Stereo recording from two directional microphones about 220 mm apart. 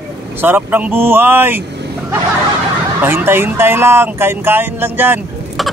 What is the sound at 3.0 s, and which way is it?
Speech, 10° right (ahead or behind).